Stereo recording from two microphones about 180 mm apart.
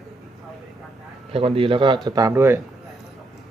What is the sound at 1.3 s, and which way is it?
Speech, 30° right (ahead or behind).